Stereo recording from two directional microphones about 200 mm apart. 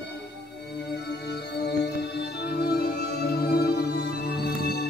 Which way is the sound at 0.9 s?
55° left (ahead or behind).